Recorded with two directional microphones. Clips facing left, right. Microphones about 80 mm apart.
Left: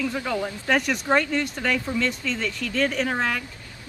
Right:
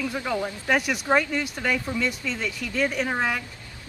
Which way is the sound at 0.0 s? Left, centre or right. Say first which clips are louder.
Left 1 dB; centre.